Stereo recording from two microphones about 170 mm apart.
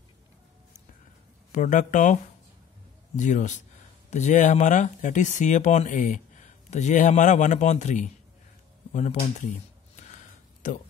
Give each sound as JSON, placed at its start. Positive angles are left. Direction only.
{"t": 1.5, "sound": "speech", "side_deg": 45}
{"t": 3.2, "sound": "speech", "side_deg": 45}
{"t": 9.9, "sound": "a sound", "side_deg": 45}